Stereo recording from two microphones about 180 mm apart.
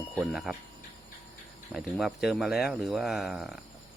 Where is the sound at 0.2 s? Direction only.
Centre (ahead or behind).